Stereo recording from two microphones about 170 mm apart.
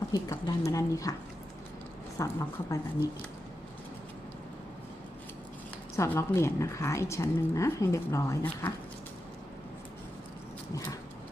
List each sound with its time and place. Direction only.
0.1 s speech: 20° left (ahead or behind)
2.1 s a woman's voice: 20° left (ahead or behind)
6.0 s a woman's voice: 15° left (ahead or behind)